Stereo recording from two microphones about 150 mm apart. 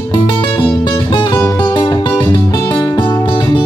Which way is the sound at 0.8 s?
30° left (ahead or behind).